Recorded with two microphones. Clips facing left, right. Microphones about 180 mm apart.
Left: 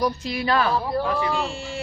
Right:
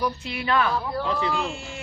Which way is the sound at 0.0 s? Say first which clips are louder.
Left 4 dB; 40° left (ahead or behind).